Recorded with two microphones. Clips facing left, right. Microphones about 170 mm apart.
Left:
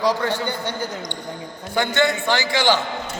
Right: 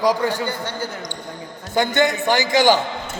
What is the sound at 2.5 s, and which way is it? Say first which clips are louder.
Speech: right 5 dB; 45° right (ahead or behind).